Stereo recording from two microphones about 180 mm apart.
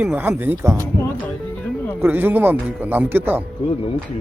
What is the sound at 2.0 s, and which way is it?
Speech, 10° right (ahead or behind).